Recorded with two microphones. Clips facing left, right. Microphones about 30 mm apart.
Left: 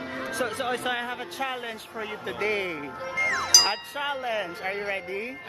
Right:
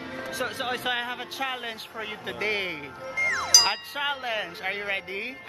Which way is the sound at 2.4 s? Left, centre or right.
Right.